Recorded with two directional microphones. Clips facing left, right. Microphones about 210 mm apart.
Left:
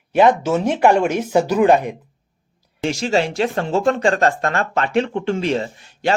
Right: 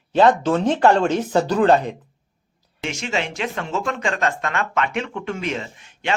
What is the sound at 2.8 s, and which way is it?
Speech, 35° left (ahead or behind).